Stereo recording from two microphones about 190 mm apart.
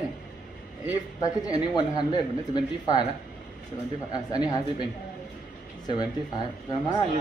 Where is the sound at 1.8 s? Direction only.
20° left (ahead or behind).